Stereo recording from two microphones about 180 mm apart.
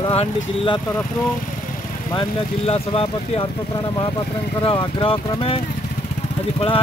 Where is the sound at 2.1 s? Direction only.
30° left (ahead or behind).